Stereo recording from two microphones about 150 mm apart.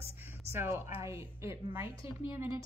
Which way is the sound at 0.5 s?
15° right (ahead or behind).